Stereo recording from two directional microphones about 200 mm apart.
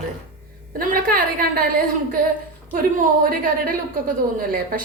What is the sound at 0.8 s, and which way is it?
Speech, 45° right (ahead or behind).